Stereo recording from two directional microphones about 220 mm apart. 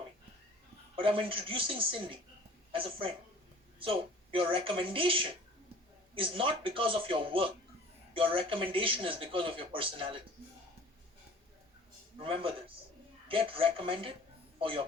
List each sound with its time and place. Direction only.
0.9 s speech: 25° right (ahead or behind)
12.2 s a man's voice: 25° right (ahead or behind)